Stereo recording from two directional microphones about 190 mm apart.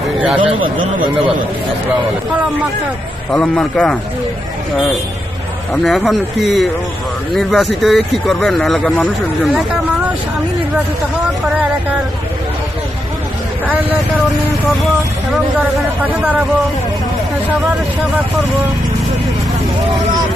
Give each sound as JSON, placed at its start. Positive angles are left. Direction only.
{"t": 0.4, "sound": "speech", "side_deg": -25}
{"t": 3.3, "sound": "speech", "side_deg": 5}
{"t": 5.9, "sound": "speech", "side_deg": 0}